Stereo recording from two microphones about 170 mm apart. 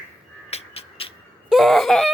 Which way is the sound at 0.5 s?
35° left (ahead or behind).